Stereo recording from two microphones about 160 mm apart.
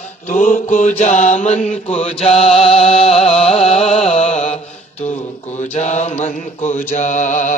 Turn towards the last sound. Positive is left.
turn(degrees=50)  # may be behind; listen again after turning